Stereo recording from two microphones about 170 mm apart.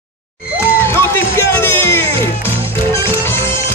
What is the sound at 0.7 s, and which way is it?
Music, 15° left (ahead or behind).